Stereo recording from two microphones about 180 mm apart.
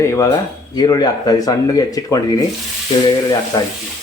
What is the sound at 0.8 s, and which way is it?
Speech, 20° left (ahead or behind).